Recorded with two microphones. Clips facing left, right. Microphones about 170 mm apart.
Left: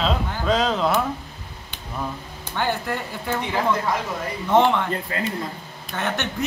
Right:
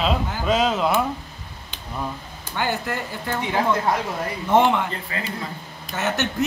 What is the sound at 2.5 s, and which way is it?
Speech, 5° right (ahead or behind).